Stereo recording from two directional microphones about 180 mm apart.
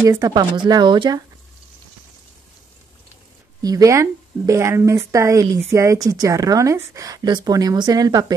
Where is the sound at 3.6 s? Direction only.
20° right (ahead or behind).